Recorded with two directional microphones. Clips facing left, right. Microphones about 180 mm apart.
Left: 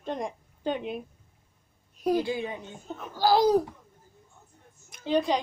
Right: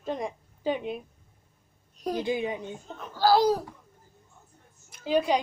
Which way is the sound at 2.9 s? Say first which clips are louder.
Left 1 dB; 5° left (ahead or behind).